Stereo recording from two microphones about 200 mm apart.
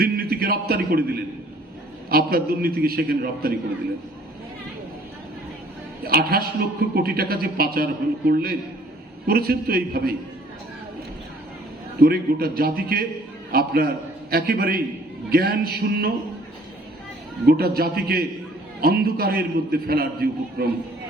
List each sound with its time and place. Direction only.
0.0 s a man's voice: 50° right (ahead or behind)
6.1 s a man's voice: 50° right (ahead or behind)
11.9 s a man's voice: 50° right (ahead or behind)
17.6 s a man's voice: 50° right (ahead or behind)